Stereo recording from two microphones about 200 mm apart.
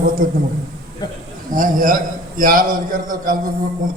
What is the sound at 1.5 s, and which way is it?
A man's voice, 40° right (ahead or behind).